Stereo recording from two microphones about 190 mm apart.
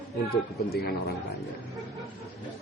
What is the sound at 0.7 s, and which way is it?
Speech, 55° left (ahead or behind).